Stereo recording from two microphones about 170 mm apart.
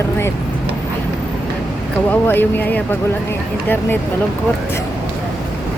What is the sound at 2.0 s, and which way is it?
Speech, 10° left (ahead or behind).